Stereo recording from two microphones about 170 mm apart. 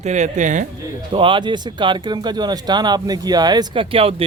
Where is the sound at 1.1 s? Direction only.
30° right (ahead or behind).